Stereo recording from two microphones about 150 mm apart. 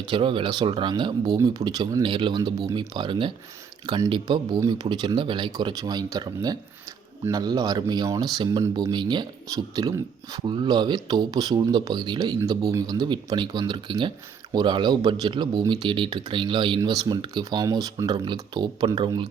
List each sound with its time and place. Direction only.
0.0 s speech: 35° right (ahead or behind)